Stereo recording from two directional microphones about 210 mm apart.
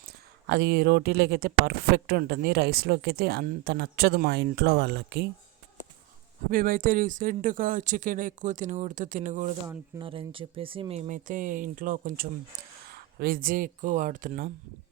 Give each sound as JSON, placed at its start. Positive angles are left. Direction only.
{"t": 0.4, "sound": "speech", "side_deg": -55}
{"t": 6.5, "sound": "speech", "side_deg": -45}
{"t": 9.6, "sound": "speech", "side_deg": -25}